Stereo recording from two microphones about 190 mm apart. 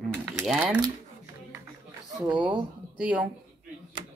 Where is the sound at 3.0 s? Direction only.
5° right (ahead or behind).